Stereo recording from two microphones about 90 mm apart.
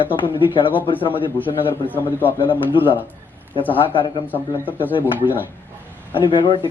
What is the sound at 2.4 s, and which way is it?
Speech, 70° left (ahead or behind).